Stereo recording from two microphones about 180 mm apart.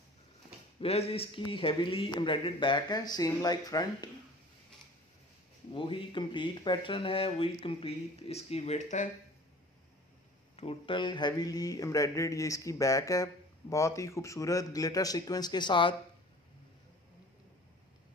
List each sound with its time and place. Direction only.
0.7 s speech: 35° left (ahead or behind)
5.7 s speech: 30° left (ahead or behind)
10.5 s speech: 35° left (ahead or behind)